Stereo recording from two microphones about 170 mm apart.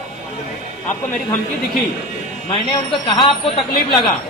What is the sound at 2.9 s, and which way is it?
Speech, 30° left (ahead or behind).